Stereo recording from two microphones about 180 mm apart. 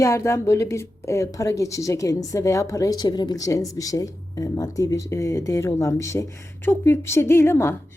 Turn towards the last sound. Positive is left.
turn(degrees=10)  # may be behind; listen again after turning